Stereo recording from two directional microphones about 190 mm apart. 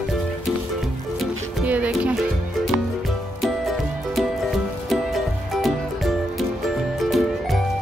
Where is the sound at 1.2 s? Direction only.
5° right (ahead or behind).